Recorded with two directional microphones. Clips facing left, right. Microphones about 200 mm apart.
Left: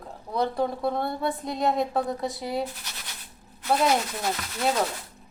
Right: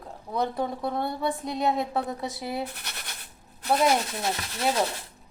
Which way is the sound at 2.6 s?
60° right (ahead or behind).